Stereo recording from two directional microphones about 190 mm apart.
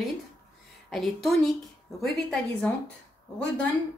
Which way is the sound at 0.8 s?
Centre (ahead or behind).